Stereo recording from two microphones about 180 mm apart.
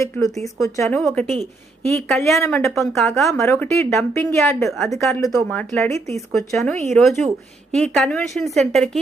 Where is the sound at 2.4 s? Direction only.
15° left (ahead or behind).